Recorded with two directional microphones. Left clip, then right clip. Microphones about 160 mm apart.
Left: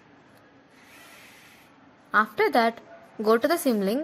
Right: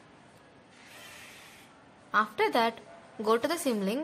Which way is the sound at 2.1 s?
25° left (ahead or behind).